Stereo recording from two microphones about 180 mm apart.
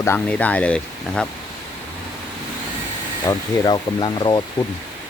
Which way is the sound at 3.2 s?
25° left (ahead or behind).